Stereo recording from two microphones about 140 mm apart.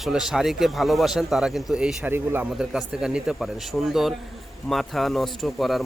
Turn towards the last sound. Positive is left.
turn(degrees=0)  # may be behind; listen again after turning